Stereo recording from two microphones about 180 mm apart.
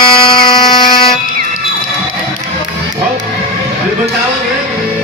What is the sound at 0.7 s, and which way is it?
Buzzer, 25° left (ahead or behind).